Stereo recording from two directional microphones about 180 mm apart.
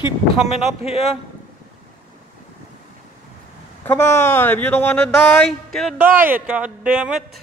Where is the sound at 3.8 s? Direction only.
10° left (ahead or behind); by 7.2 s 5° right (ahead or behind).